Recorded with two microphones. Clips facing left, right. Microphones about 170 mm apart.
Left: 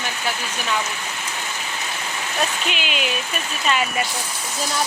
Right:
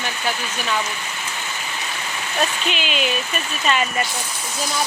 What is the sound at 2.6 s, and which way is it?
Speech, 5° left (ahead or behind).